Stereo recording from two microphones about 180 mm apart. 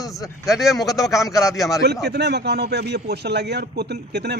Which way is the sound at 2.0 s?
65° right (ahead or behind).